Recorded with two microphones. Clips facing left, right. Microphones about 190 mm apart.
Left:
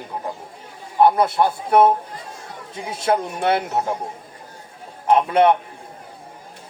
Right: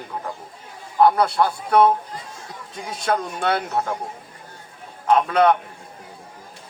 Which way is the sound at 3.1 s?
10° left (ahead or behind).